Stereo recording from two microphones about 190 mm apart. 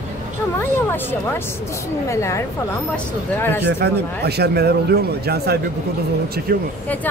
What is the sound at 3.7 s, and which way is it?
Speech, 60° right (ahead or behind).